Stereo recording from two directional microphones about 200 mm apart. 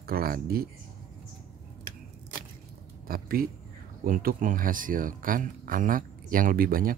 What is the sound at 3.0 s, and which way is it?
Speech, 45° right (ahead or behind).